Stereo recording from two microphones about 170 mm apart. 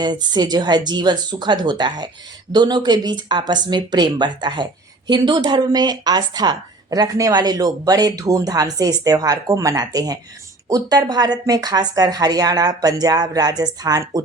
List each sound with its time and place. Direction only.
0.0 s speech: 25° right (ahead or behind)